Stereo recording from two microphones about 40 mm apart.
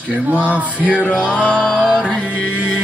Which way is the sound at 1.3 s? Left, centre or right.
Left.